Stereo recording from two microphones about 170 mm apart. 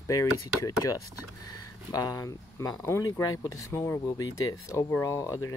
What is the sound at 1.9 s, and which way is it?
Speech, 20° left (ahead or behind).